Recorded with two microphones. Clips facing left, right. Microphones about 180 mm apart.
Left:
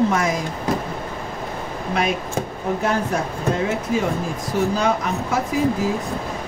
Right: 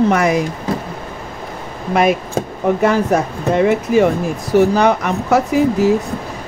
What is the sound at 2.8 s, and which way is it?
Speech, 70° right (ahead or behind).